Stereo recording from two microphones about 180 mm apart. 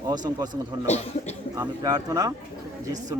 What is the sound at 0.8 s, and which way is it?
Speech, 35° left (ahead or behind).